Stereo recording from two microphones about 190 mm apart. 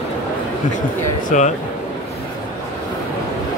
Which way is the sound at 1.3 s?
40° left (ahead or behind).